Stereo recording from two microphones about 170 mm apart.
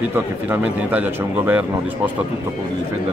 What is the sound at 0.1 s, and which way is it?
A man's voice, 10° right (ahead or behind).